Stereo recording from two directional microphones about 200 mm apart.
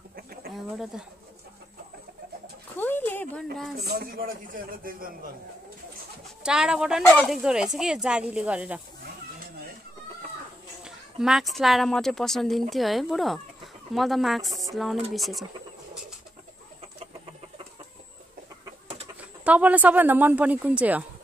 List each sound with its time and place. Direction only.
0.1 s chicken: 50° right (ahead or behind)
2.8 s a sound: 10° left (ahead or behind)
3.5 s a woman's voice: centre (ahead or behind)
3.8 s a man's voice: 50° right (ahead or behind)
6.4 s a woman's voice: 5° right (ahead or behind)
10.8 s a woman's voice: 5° right (ahead or behind)
19.4 s speech: 5° right (ahead or behind)